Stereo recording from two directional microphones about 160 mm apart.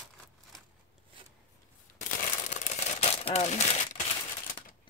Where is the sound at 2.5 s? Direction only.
45° left (ahead or behind).